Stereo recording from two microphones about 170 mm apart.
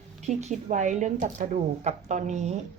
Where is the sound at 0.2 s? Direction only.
40° right (ahead or behind).